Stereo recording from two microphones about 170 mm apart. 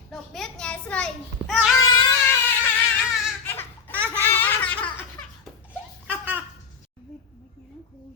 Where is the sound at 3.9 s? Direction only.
10° right (ahead or behind).